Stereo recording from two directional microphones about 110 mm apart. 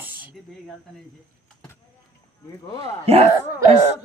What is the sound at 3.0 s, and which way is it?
Speech, 65° right (ahead or behind).